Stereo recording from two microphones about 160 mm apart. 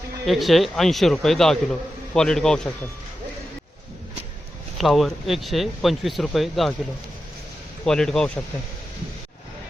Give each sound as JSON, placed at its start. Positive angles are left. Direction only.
{"t": 0.3, "sound": "speech", "side_deg": 0}
{"t": 4.8, "sound": "speech", "side_deg": 0}
{"t": 7.9, "sound": "speech", "side_deg": 5}